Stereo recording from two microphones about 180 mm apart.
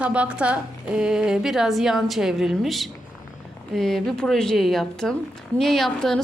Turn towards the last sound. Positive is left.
turn(degrees=0)  # may be behind; listen again after turning